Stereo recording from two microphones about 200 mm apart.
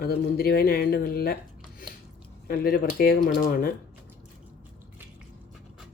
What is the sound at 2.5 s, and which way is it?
Speech, 50° left (ahead or behind).